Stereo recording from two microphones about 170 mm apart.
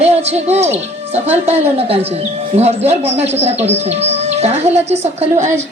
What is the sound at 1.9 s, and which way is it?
Speech, 35° right (ahead or behind).